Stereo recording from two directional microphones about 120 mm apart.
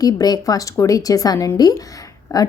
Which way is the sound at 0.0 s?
35° left (ahead or behind).